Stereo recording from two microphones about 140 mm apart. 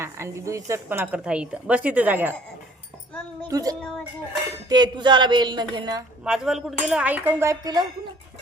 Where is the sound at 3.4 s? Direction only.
25° right (ahead or behind).